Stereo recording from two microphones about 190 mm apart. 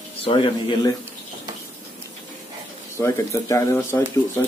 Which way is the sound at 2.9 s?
15° left (ahead or behind).